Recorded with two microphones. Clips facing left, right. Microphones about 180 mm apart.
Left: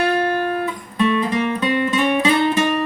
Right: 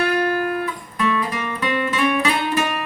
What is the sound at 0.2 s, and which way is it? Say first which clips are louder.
Music: left 1 dB; 25° left (ahead or behind).